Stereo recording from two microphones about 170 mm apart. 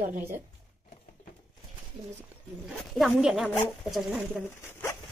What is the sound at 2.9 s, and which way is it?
Speech, centre (ahead or behind).